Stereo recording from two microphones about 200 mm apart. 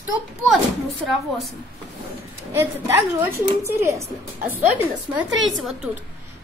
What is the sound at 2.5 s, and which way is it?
A woman's voice, 10° right (ahead or behind).